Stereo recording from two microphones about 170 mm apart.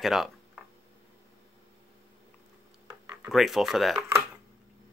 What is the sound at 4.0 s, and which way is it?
Speech, 15° right (ahead or behind).